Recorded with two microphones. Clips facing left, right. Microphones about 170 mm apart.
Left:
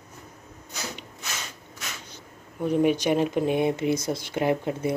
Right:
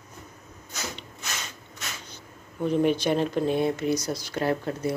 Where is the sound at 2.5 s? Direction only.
10° left (ahead or behind).